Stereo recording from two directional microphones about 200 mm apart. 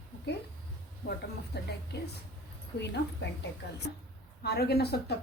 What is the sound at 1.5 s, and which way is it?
Speech, 55° left (ahead or behind).